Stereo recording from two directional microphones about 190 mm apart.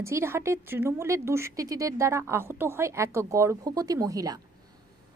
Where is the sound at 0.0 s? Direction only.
15° right (ahead or behind).